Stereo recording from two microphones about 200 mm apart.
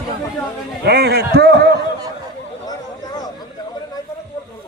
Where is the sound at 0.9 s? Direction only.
55° right (ahead or behind).